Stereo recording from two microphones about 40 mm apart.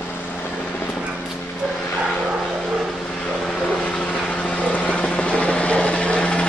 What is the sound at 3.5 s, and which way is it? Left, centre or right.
Vehicle, left.